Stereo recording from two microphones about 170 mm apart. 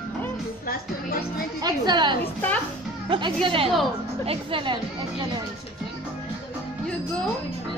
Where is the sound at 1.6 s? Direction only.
25° right (ahead or behind).